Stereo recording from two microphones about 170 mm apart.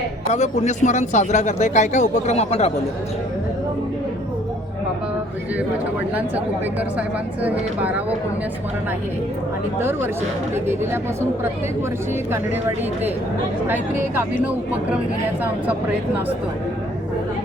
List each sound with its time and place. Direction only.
0.3 s speech: 45° left (ahead or behind)
6.1 s speech: 10° right (ahead or behind)
9.7 s speech: 15° right (ahead or behind)
13.7 s speech: 10° right (ahead or behind)